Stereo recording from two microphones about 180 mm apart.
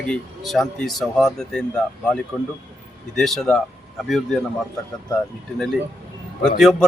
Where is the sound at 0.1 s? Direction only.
Centre (ahead or behind).